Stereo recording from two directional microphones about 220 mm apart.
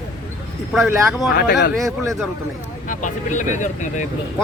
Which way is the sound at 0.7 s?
Centre (ahead or behind).